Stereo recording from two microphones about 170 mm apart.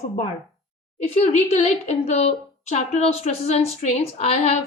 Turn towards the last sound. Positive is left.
turn(degrees=35)  # may be behind; listen again after turning